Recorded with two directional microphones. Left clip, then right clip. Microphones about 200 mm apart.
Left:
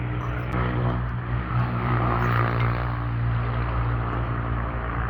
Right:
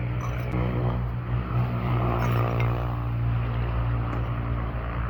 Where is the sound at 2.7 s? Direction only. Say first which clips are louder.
Left 3 dB; 40° right (ahead or behind).